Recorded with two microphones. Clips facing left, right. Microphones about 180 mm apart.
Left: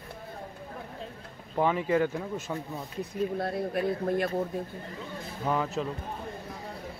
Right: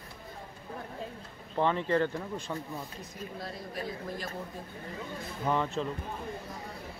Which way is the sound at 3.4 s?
60° left (ahead or behind).